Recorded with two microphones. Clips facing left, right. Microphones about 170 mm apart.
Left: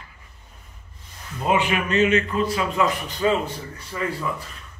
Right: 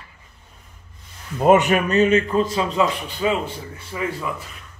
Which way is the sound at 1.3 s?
45° right (ahead or behind).